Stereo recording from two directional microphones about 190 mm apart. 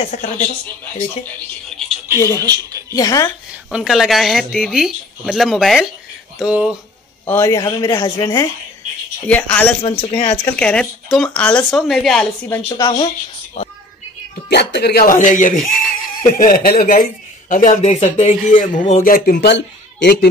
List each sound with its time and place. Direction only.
0.0 s speech: 40° left (ahead or behind)
2.1 s speech: 15° left (ahead or behind)
2.4 s speech: 20° right (ahead or behind)
2.9 s speech: 20° left (ahead or behind)
3.7 s speech: centre (ahead or behind)
7.2 s speech: 15° left (ahead or behind)
9.8 s speech: 30° left (ahead or behind)
10.5 s speech: 5° left (ahead or behind)
12.7 s speech: 25° left (ahead or behind)
13.6 s a sound: 35° left (ahead or behind)
14.5 s speech: 60° left (ahead or behind)